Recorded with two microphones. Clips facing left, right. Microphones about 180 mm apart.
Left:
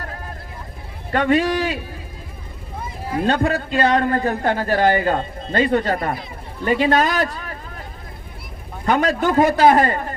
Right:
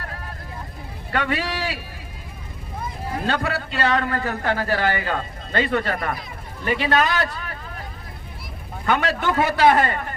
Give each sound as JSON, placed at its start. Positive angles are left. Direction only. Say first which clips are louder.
{"t": 1.1, "sound": "a man's voice", "louder": "left 7 dB", "side_deg": 30}
{"t": 3.2, "sound": "a man's voice", "louder": "left 6 dB", "side_deg": 35}
{"t": 4.8, "sound": "speech", "louder": "left 6 dB", "side_deg": 40}
{"t": 6.7, "sound": "a man's voice", "louder": "left 3 dB", "side_deg": 45}
{"t": 8.9, "sound": "a man's voice", "louder": "left 4 dB", "side_deg": 35}
{"t": 9.7, "sound": "a man's voice", "louder": "left 4 dB", "side_deg": 30}